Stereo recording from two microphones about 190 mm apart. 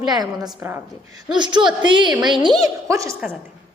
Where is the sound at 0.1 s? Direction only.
20° right (ahead or behind).